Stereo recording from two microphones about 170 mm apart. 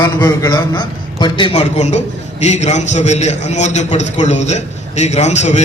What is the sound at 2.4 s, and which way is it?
A man's voice, 40° left (ahead or behind).